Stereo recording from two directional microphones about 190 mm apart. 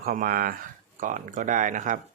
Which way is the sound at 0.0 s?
50° right (ahead or behind).